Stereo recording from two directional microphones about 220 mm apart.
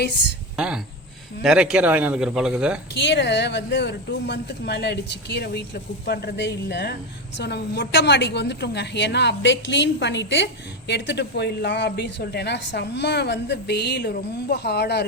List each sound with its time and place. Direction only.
0.5 s a man's voice: 5° right (ahead or behind)
2.9 s a woman's voice: 55° left (ahead or behind)